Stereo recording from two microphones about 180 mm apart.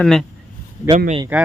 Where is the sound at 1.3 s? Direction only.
10° right (ahead or behind).